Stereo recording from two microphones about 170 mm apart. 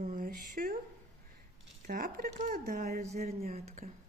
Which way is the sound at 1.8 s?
55° right (ahead or behind).